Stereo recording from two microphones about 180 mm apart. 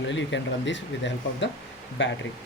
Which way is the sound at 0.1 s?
90° left.